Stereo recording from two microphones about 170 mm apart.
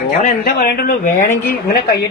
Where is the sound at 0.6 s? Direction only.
65° left (ahead or behind).